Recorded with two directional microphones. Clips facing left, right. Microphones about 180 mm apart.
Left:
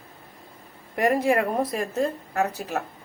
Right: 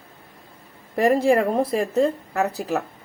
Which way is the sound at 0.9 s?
25° right (ahead or behind).